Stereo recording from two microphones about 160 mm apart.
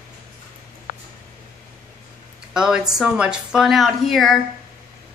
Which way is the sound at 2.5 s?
5° right (ahead or behind).